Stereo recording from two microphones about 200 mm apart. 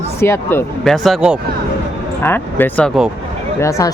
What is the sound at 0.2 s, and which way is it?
Speech, 15° left (ahead or behind).